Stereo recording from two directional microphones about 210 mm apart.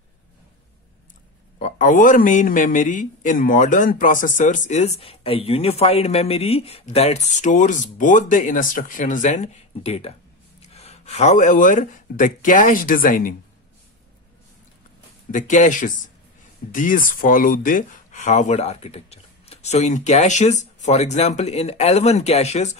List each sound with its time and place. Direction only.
1.6 s speech: 35° left (ahead or behind)
15.3 s speech: 35° left (ahead or behind)